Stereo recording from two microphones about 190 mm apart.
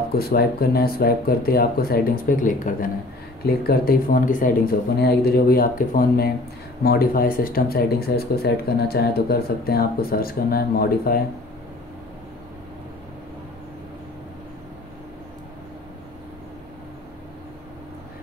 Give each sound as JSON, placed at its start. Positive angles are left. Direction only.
{"t": 0.1, "sound": "speech", "side_deg": 55}